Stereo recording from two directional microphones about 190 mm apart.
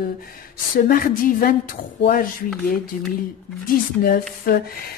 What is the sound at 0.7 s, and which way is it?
Speech, 50° left (ahead or behind).